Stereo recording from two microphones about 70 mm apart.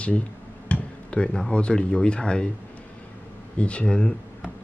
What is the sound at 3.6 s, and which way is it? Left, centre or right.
Speech, centre.